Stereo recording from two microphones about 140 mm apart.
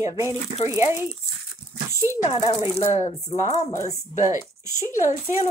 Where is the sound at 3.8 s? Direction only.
65° left (ahead or behind).